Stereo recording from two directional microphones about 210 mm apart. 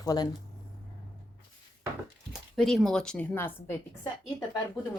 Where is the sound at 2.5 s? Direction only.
Centre (ahead or behind).